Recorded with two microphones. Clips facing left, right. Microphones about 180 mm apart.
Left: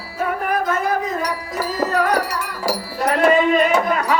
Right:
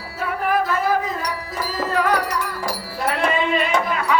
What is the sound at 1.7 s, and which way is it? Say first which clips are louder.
Music: left 1 dB; 40° left (ahead or behind).